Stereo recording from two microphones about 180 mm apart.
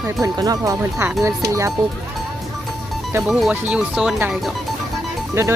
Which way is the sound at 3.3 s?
5° right (ahead or behind).